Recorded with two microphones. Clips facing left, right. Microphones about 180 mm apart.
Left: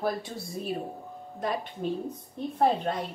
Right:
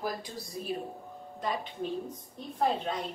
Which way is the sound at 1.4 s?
50° left (ahead or behind).